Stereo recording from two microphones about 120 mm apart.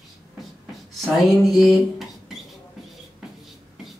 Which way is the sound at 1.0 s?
Centre (ahead or behind).